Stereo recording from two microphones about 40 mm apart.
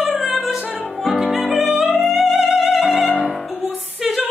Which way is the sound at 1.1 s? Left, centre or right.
Centre.